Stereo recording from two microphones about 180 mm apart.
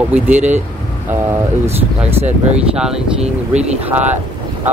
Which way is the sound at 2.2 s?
40° right (ahead or behind).